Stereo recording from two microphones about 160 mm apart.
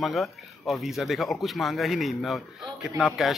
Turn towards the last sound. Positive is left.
turn(degrees=0)  # may be behind; listen again after turning